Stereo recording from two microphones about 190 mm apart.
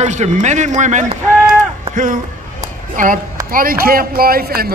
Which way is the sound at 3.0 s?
45° right (ahead or behind).